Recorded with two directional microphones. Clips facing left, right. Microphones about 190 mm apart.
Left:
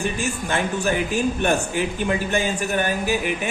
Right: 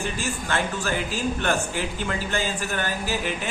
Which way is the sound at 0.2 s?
15° left (ahead or behind).